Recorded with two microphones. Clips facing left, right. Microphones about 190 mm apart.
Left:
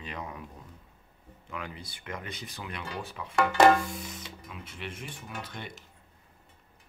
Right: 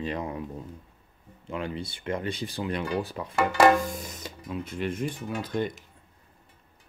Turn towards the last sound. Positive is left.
turn(degrees=-40)  # may be behind; listen again after turning